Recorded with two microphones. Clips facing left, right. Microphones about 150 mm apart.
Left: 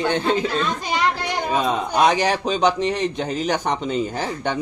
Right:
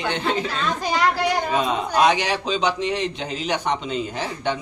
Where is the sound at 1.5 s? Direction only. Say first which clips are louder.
Left 1 dB; 40° left (ahead or behind).